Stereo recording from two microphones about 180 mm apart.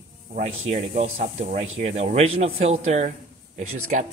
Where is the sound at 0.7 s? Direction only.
35° right (ahead or behind).